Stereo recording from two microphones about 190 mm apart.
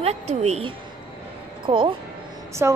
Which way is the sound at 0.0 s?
35° right (ahead or behind).